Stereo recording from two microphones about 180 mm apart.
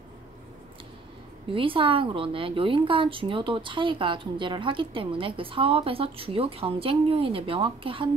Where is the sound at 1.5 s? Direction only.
30° right (ahead or behind).